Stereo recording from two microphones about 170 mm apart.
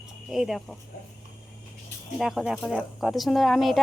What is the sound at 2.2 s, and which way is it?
A woman's voice, centre (ahead or behind).